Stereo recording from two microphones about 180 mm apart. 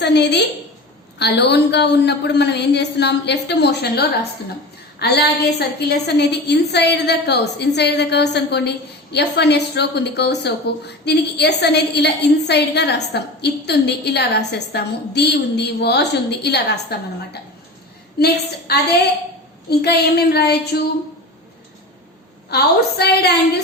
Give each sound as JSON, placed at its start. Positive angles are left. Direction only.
{"t": 0.0, "sound": "a woman's voice", "side_deg": 70}
{"t": 18.7, "sound": "speech", "side_deg": 60}
{"t": 22.4, "sound": "speech", "side_deg": 60}